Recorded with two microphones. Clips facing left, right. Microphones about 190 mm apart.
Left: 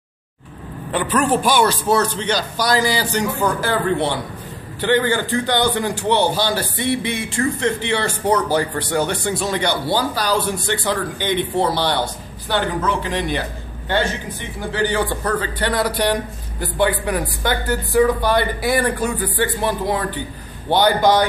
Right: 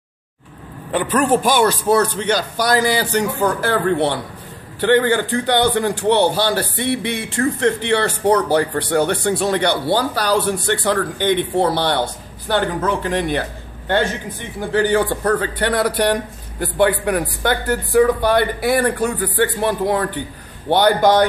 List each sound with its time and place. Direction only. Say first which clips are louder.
1.0 s a man's voice: right 2 dB; 45° right (ahead or behind)
14.7 s a man's voice: right 4 dB; 50° right (ahead or behind)